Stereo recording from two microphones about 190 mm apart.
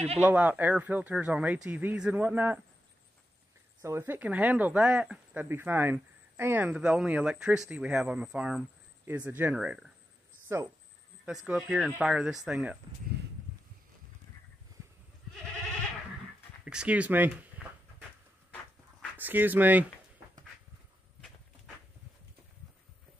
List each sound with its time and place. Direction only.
0.2 s speech: 10° right (ahead or behind)
3.8 s speech: 15° right (ahead or behind)
11.4 s speech: centre (ahead or behind)
16.6 s speech: 5° right (ahead or behind)
19.1 s speech: 10° right (ahead or behind)